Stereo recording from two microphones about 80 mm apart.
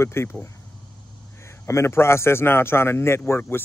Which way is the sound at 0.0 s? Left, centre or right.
Left.